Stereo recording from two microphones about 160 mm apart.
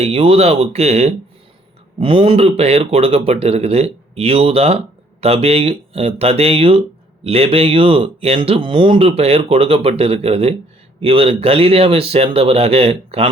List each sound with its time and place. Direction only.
0.0 s speech: 35° right (ahead or behind)